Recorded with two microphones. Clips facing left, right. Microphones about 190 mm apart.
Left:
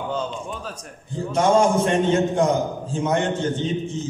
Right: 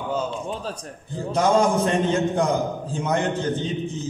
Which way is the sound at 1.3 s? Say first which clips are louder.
Left 1 dB; 35° right (ahead or behind).